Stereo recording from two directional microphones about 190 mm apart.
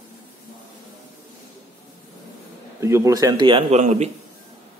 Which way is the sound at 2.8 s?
15° right (ahead or behind).